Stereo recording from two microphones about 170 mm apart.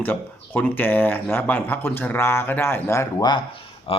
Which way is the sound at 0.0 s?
10° left (ahead or behind).